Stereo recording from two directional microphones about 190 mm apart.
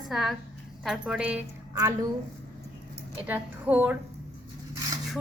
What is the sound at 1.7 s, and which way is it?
Speech, 20° right (ahead or behind).